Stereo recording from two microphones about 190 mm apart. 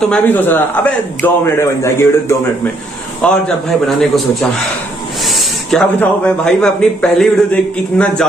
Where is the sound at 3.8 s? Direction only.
Centre (ahead or behind).